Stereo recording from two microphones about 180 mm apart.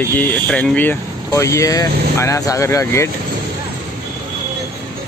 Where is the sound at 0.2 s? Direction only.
5° left (ahead or behind).